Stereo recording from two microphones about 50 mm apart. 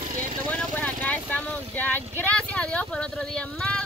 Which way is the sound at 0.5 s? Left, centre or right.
Left.